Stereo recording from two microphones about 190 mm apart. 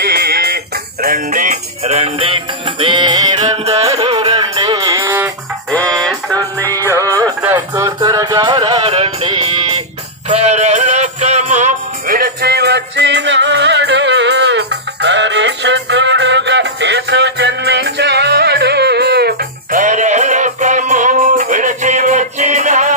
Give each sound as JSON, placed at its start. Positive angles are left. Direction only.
{"t": 0.0, "sound": "music", "side_deg": -55}
{"t": 1.0, "sound": "music", "side_deg": -45}
{"t": 3.3, "sound": "music", "side_deg": -35}
{"t": 4.3, "sound": "music", "side_deg": -20}
{"t": 6.0, "sound": "music", "side_deg": 0}
{"t": 6.9, "sound": "music", "side_deg": 15}
{"t": 7.2, "sound": "music", "side_deg": -20}
{"t": 8.7, "sound": "music", "side_deg": -35}
{"t": 19.8, "sound": "music", "side_deg": -40}